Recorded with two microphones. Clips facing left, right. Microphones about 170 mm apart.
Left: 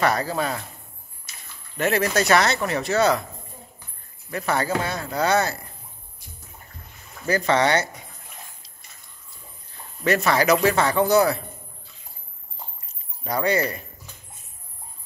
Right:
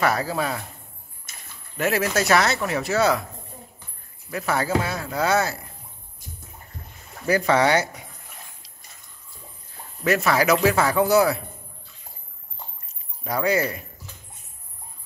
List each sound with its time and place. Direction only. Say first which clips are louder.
0.0 s speech: even; 5° right (ahead or behind)
1.3 s a sound: right 1 dB; 50° right (ahead or behind)
1.8 s speech: left 1 dB; 5° right (ahead or behind)
4.3 s speech: even; 5° right (ahead or behind)
7.2 s speech: right 1 dB; 10° right (ahead or behind)
10.0 s speech: even; 5° right (ahead or behind)
13.2 s speech: even; 5° right (ahead or behind)